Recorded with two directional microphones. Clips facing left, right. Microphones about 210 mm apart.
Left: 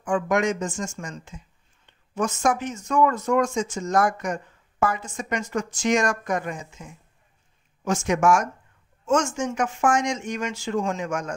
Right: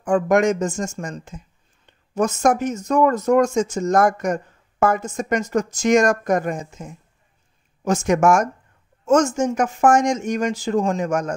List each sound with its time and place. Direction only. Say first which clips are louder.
0.0 s speech: right 6 dB; 40° right (ahead or behind)